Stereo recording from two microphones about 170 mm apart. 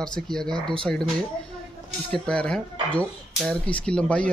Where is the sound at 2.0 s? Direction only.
5° left (ahead or behind).